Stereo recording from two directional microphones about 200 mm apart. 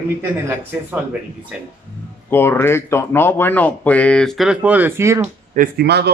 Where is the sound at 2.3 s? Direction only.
10° left (ahead or behind); by 5.3 s 15° right (ahead or behind).